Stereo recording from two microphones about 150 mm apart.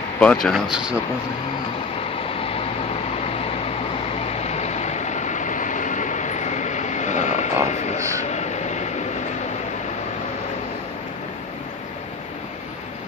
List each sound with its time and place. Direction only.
0.2 s speech: 5° left (ahead or behind)
4.4 s train: 45° left (ahead or behind)
7.7 s vehicle: 50° left (ahead or behind)
8.3 s train: 50° left (ahead or behind)